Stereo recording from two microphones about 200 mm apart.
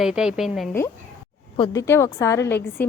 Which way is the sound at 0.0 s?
5° right (ahead or behind).